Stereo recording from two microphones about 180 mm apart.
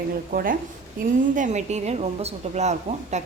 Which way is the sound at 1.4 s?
40° right (ahead or behind).